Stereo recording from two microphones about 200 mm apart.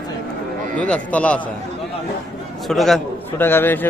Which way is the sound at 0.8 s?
5° left (ahead or behind).